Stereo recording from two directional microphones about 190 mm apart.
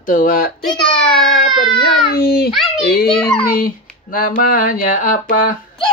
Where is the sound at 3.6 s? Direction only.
50° left (ahead or behind).